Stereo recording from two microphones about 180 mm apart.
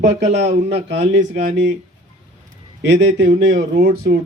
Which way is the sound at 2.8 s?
75° right (ahead or behind).